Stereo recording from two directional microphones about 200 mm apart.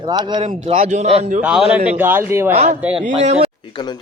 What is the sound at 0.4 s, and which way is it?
Speech, 35° right (ahead or behind).